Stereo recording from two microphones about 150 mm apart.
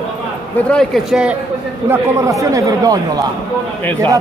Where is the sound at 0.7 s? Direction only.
Centre (ahead or behind).